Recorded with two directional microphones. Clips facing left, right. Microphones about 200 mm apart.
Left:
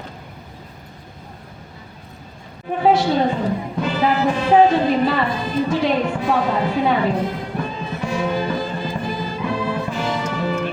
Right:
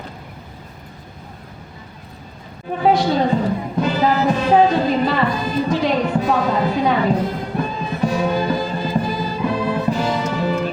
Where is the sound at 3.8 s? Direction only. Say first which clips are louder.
Right 1 dB; 40° right (ahead or behind).